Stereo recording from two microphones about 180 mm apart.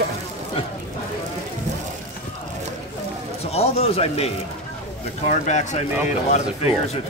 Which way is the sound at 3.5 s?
35° left (ahead or behind).